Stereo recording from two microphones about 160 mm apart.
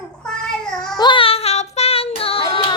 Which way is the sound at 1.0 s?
30° left (ahead or behind).